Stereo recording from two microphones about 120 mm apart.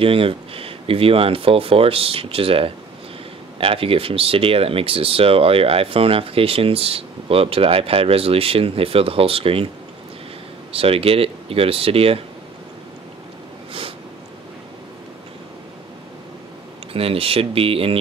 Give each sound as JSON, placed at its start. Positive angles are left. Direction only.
{"t": 0.0, "sound": "speech", "side_deg": -50}
{"t": 10.7, "sound": "speech", "side_deg": -50}
{"t": 16.9, "sound": "speech", "side_deg": -50}